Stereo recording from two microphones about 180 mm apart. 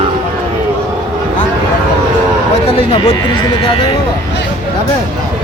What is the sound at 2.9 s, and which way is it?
Speech, 30° left (ahead or behind).